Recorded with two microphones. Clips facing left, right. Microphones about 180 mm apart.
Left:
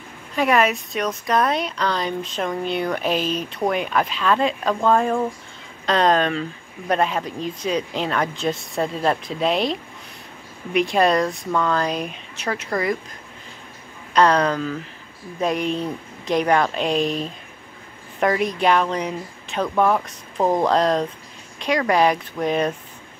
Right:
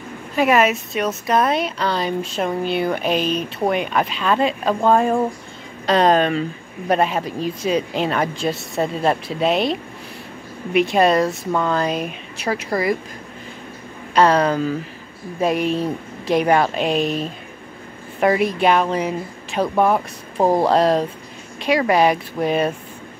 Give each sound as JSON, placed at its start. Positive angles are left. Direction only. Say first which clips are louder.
{"t": 0.4, "sound": "a woman's voice", "louder": "right 2 dB", "side_deg": -5}
{"t": 5.9, "sound": "a woman's voice", "louder": "right 3 dB", "side_deg": -10}
{"t": 14.1, "sound": "a woman's voice", "louder": "right 2 dB", "side_deg": -5}